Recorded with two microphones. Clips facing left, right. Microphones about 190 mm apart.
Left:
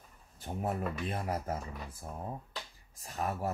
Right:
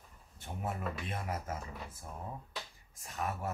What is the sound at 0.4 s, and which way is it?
Speech, 40° left (ahead or behind).